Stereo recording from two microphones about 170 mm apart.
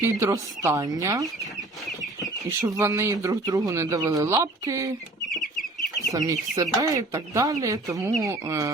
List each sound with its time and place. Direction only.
0.0 s speech: 15° right (ahead or behind)
2.5 s speech: 15° right (ahead or behind)
6.1 s speech: 20° right (ahead or behind)